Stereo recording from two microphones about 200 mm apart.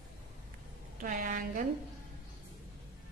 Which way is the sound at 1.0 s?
45° right (ahead or behind).